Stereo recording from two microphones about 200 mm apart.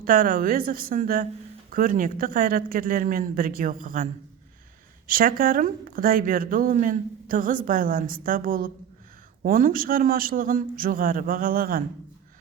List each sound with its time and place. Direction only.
0.0 s speech: 45° right (ahead or behind)